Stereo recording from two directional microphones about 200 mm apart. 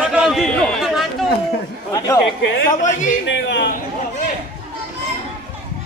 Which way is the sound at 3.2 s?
60° left (ahead or behind).